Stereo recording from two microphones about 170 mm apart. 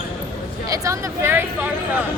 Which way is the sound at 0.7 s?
20° right (ahead or behind).